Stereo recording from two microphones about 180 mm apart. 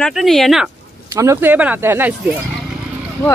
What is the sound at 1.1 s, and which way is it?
Speech, 15° right (ahead or behind).